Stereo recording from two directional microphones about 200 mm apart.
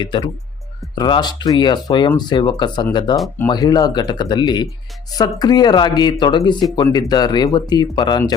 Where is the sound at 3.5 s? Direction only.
20° left (ahead or behind).